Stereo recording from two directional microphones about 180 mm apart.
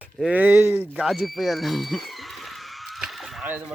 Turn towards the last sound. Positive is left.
turn(degrees=-5)  # may be behind; listen again after turning